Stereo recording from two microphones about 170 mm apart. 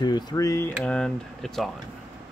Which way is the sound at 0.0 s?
25° left (ahead or behind).